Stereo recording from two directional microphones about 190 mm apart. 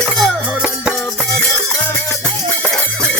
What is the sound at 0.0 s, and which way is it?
Music, centre (ahead or behind).